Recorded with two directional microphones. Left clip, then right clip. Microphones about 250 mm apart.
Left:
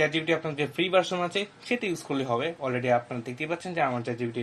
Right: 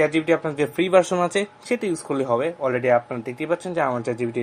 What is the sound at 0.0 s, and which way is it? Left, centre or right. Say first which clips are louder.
Speech: right 6 dB; right.